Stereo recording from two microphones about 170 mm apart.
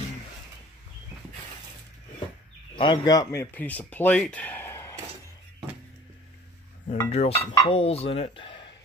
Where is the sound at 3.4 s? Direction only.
10° left (ahead or behind).